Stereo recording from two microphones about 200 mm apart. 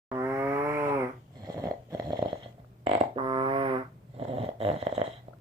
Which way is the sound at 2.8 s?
25° right (ahead or behind).